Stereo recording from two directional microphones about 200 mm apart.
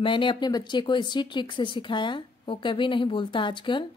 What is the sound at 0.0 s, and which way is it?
Speech, 25° left (ahead or behind).